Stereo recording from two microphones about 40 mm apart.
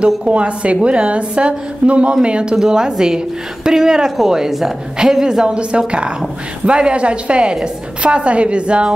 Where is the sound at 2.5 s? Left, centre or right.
Centre.